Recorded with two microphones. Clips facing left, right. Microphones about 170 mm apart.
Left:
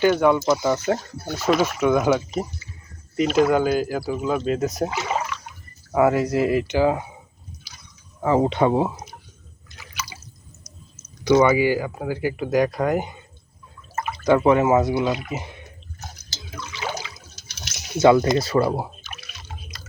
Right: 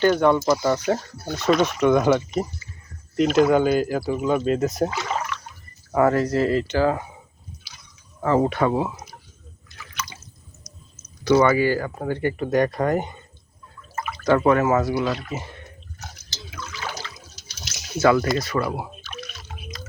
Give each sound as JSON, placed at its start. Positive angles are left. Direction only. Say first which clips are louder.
{"t": 0.0, "sound": "speech", "louder": "even", "side_deg": 5}
{"t": 8.2, "sound": "speech", "louder": "left 1 dB", "side_deg": 15}
{"t": 9.8, "sound": "drip", "louder": "right 1 dB", "side_deg": 10}
{"t": 11.2, "sound": "speech", "louder": "left 1 dB", "side_deg": 15}
{"t": 14.3, "sound": "speech", "louder": "left 1 dB", "side_deg": 15}
{"t": 16.8, "sound": "water", "louder": "left 5 dB", "side_deg": 10}
{"t": 18.0, "sound": "speech", "louder": "left 3 dB", "side_deg": 20}
{"t": 19.1, "sound": "drip", "louder": "right 4 dB", "side_deg": 5}